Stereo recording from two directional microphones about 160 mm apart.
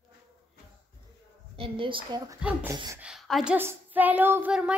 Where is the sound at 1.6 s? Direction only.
30° right (ahead or behind).